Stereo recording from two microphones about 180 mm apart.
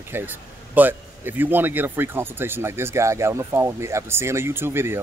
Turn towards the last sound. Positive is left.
turn(degrees=-10)  # may be behind; listen again after turning